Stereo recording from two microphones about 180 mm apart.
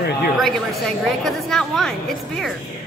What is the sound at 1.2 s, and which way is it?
Speech, centre (ahead or behind).